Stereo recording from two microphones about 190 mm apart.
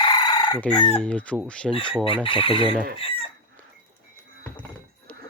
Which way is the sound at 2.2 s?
25° left (ahead or behind).